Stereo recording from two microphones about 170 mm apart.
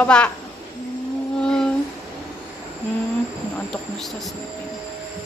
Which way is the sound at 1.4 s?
5° left (ahead or behind).